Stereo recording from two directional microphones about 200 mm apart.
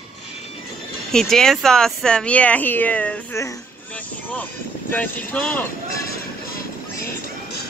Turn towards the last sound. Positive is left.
turn(degrees=45)  # may be behind; listen again after turning